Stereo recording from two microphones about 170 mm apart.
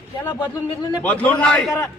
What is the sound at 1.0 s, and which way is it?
Speech, 10° left (ahead or behind).